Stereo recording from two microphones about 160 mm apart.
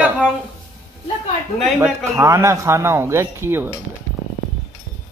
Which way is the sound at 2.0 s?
20° right (ahead or behind).